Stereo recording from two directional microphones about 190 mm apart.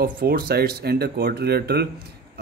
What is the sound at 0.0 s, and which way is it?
Speech, 55° right (ahead or behind).